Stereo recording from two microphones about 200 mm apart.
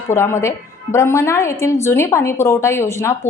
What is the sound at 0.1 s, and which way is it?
A woman's voice, 15° left (ahead or behind).